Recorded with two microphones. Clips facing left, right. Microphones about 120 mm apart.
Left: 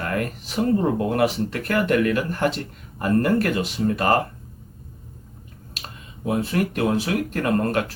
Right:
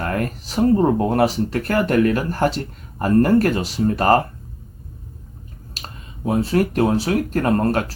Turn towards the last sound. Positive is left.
turn(degrees=-35)  # may be behind; listen again after turning